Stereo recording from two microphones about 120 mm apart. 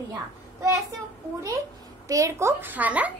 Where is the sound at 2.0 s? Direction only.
30° right (ahead or behind); by 3.1 s 10° right (ahead or behind).